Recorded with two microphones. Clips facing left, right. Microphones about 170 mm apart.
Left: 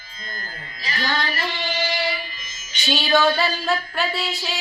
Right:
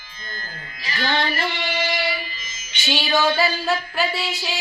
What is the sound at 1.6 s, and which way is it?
Music, 35° left (ahead or behind).